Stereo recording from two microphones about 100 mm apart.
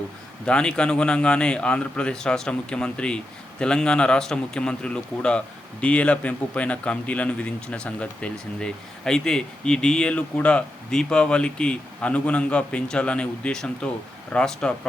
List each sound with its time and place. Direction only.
0.4 s speech: 10° left (ahead or behind)